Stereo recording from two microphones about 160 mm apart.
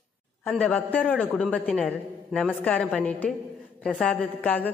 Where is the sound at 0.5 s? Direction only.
5° left (ahead or behind).